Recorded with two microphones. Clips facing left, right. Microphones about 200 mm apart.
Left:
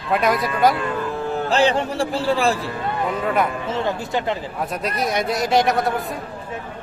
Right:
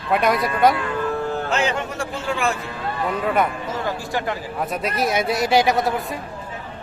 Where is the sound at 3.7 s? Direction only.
25° left (ahead or behind).